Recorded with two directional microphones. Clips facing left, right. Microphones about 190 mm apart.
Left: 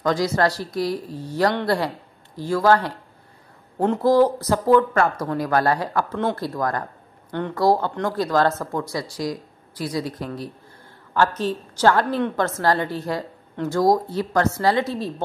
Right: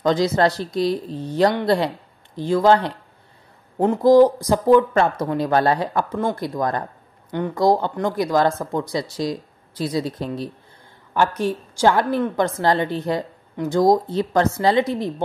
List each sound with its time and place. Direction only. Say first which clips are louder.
0.0 s a woman's voice: right 3 dB; 20° right (ahead or behind)
11.1 s a woman's voice: right 1 dB; 10° right (ahead or behind)